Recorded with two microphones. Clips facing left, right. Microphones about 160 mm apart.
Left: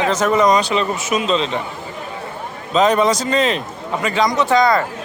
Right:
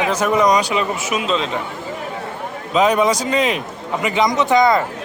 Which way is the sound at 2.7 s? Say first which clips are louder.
Left 1 dB; 10° right (ahead or behind).